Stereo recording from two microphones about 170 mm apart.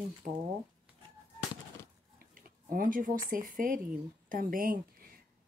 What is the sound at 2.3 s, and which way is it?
Speech, 55° right (ahead or behind).